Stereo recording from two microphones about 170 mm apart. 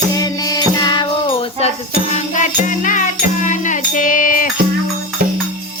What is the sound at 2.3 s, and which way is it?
Music, 50° left (ahead or behind).